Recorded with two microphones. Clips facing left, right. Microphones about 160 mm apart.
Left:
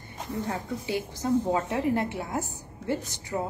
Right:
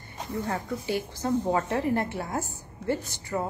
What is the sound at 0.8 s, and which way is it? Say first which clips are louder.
A woman's voice: left 1 dB; 20° left (ahead or behind).